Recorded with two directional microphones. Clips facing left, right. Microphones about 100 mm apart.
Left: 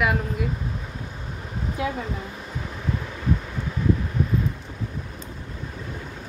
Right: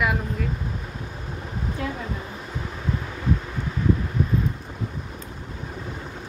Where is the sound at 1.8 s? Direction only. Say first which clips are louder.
Left 4 dB; 5° left (ahead or behind).